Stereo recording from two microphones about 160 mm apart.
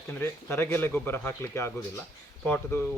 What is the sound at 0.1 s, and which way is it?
Speech, 15° left (ahead or behind).